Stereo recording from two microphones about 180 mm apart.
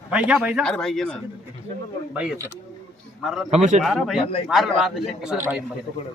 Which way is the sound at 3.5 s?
40° right (ahead or behind).